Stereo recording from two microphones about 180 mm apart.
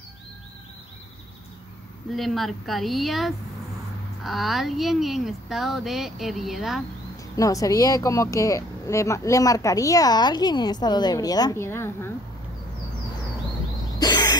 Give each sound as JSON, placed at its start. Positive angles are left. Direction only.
{"t": 2.1, "sound": "speech", "side_deg": 0}
{"t": 7.3, "sound": "speech", "side_deg": 20}
{"t": 13.9, "sound": "cough", "side_deg": 20}